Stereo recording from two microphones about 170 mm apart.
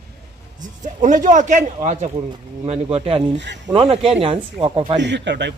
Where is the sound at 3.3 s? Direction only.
90° right.